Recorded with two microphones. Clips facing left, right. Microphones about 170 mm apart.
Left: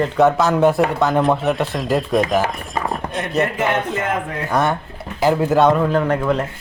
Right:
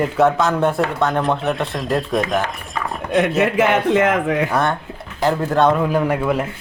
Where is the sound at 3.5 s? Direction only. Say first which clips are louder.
Right 5 dB; 80° right.